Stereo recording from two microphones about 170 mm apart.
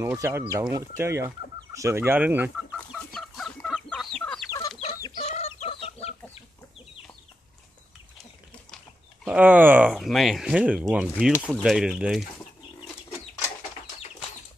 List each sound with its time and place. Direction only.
0.0 s speech: 15° right (ahead or behind)
2.9 s chicken: centre (ahead or behind)
4.5 s chicken: 20° left (ahead or behind)
5.2 s chicken: 40° left (ahead or behind)
9.2 s speech: 10° right (ahead or behind)